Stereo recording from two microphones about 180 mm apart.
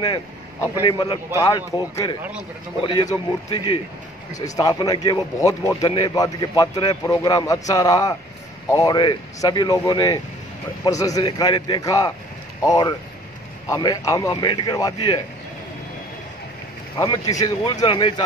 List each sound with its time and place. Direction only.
0.0 s speech: 20° left (ahead or behind)
17.0 s speech: 20° left (ahead or behind)